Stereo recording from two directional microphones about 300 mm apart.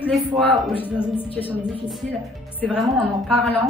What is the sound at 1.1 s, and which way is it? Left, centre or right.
Speech, centre.